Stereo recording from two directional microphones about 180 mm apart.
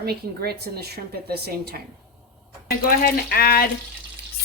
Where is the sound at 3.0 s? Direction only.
55° left (ahead or behind).